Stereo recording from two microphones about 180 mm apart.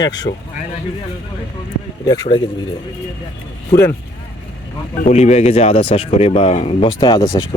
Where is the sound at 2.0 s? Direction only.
25° left (ahead or behind).